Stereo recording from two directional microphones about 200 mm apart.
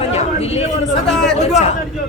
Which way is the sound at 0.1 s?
30° left (ahead or behind).